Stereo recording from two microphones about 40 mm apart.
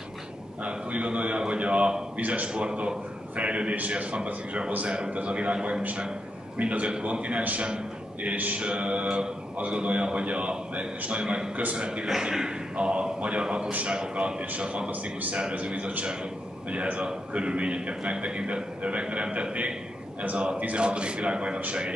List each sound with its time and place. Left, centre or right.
0.6 s a man's voice: right
11.5 s a man's voice: right
12.1 s speech: centre
13.7 s a man's voice: right
13.9 s a man's voice: right